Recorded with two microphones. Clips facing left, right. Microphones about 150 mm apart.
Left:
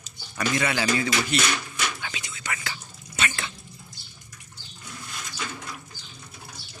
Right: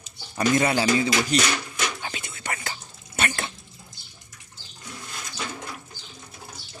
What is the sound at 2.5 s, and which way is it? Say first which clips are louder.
Whispering: even; 40° right (ahead or behind).